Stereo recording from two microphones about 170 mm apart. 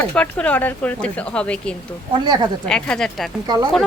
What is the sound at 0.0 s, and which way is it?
A woman's voice, 5° left (ahead or behind).